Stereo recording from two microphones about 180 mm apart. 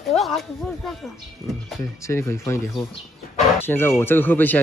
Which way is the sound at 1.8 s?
15° left (ahead or behind).